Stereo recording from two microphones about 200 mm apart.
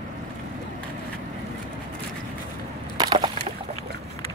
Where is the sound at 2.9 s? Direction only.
20° right (ahead or behind).